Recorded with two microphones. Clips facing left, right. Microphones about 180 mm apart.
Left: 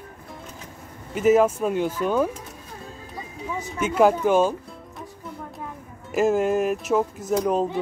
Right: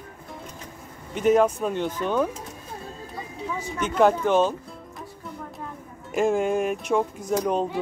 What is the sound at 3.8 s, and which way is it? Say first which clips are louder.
Speech: left 1 dB; 5° left (ahead or behind).